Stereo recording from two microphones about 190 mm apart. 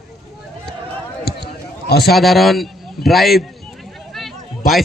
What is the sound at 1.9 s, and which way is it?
Speech, 55° left (ahead or behind).